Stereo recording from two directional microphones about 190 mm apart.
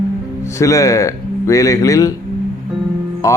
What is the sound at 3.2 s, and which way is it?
Speech, 15° left (ahead or behind).